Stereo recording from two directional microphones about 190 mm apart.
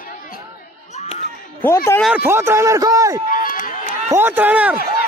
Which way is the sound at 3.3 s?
45° left (ahead or behind).